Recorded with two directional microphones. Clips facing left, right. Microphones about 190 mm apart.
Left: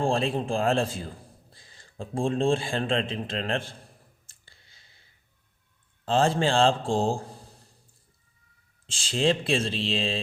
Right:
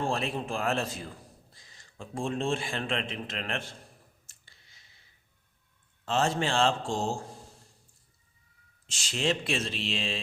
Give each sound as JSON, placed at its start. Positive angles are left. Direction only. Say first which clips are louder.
{"t": 0.0, "sound": "a man's voice", "louder": "left 5 dB", "side_deg": 30}
{"t": 4.3, "sound": "clicking", "louder": "left 2 dB", "side_deg": 30}
{"t": 6.1, "sound": "a man's voice", "louder": "left 5 dB", "side_deg": 30}
{"t": 8.9, "sound": "a man's voice", "louder": "left 5 dB", "side_deg": 30}